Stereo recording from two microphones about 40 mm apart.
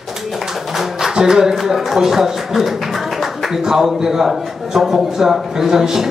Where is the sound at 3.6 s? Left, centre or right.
Centre.